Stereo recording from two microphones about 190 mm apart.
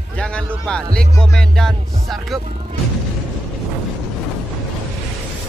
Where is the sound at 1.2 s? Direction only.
Centre (ahead or behind).